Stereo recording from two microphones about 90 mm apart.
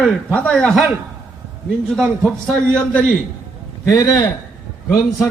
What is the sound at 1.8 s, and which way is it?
Speech, 5° left (ahead or behind).